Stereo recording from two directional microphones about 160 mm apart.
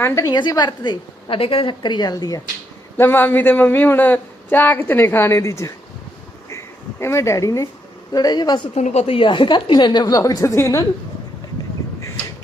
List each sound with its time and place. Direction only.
0.0 s a woman's voice: 15° left (ahead or behind)
0.3 s a woman's voice: 25° left (ahead or behind)
7.0 s a woman's voice: 15° left (ahead or behind)
8.7 s a woman's voice: 45° left (ahead or behind); by 10.8 s 20° left (ahead or behind)